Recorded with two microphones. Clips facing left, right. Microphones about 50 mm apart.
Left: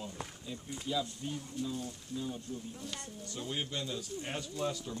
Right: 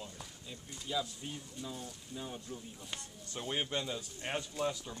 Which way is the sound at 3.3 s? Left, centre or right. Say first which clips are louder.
Right 2 dB; right.